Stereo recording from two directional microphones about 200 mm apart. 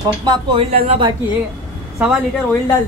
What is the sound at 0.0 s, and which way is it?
Speech, 20° right (ahead or behind).